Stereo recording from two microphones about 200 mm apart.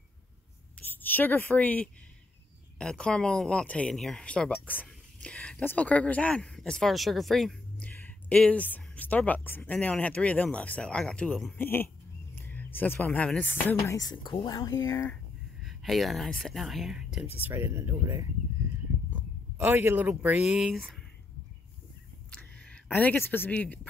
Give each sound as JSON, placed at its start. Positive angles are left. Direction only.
{"t": 1.1, "sound": "speech", "side_deg": 10}
{"t": 15.6, "sound": "speech", "side_deg": 0}
{"t": 22.3, "sound": "a sound", "side_deg": 5}